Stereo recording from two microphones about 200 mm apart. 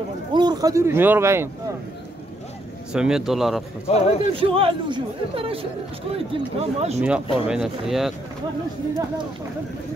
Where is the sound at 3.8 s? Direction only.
30° left (ahead or behind).